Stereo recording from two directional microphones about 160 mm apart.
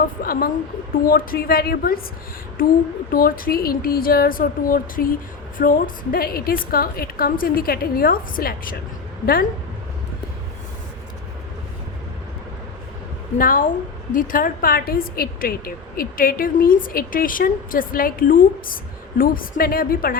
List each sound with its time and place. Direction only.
0.2 s a woman's voice: 65° left (ahead or behind)
13.4 s a woman's voice: 60° left (ahead or behind)